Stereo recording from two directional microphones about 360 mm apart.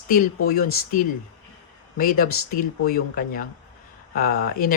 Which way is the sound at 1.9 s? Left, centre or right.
Left.